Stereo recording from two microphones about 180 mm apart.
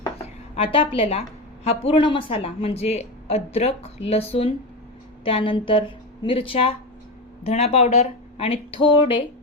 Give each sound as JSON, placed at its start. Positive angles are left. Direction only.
{"t": 0.5, "sound": "a woman's voice", "side_deg": 30}